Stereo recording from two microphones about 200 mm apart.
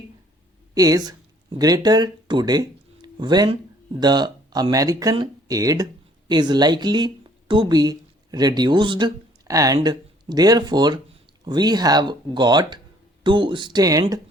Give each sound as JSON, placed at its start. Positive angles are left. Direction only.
{"t": 0.7, "sound": "speech", "side_deg": -20}